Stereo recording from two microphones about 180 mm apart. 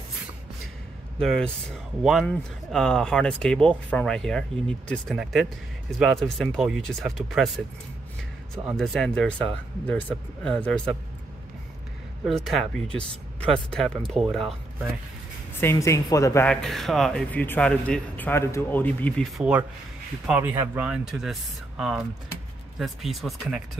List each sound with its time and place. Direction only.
1.2 s speech: 5° left (ahead or behind)
8.7 s speech: centre (ahead or behind)
12.3 s speech: centre (ahead or behind)
15.6 s speech: 15° left (ahead or behind)
16.4 s speech: centre (ahead or behind)
20.2 s speech: 10° right (ahead or behind)